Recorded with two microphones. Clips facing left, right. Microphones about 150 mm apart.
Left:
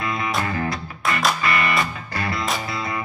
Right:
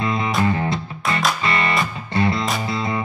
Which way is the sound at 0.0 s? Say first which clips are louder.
Right 4 dB; 25° right (ahead or behind).